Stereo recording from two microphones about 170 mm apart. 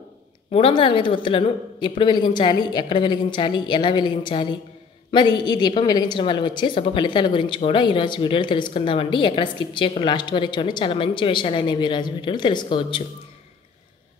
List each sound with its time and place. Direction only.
0.5 s a woman's voice: 35° left (ahead or behind)